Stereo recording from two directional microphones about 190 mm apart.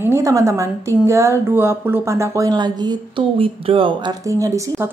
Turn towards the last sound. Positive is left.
turn(degrees=-15)  # may be behind; listen again after turning